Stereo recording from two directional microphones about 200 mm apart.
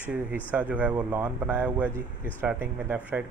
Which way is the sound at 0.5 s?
5° right (ahead or behind).